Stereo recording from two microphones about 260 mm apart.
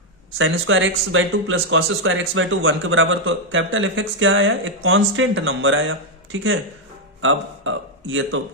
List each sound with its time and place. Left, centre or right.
0.4 s speech: right
7.2 s a man's voice: right